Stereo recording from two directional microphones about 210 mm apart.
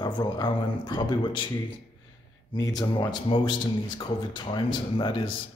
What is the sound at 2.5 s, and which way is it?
Speech, 20° left (ahead or behind).